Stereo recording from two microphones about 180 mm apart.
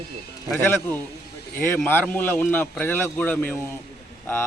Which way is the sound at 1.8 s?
10° left (ahead or behind).